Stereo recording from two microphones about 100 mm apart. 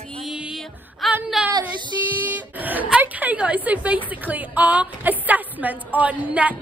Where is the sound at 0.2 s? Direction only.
5° right (ahead or behind).